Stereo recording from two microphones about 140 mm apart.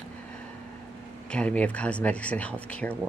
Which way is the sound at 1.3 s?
10° left (ahead or behind).